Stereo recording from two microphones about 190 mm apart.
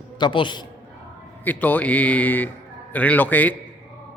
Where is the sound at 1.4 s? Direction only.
10° left (ahead or behind).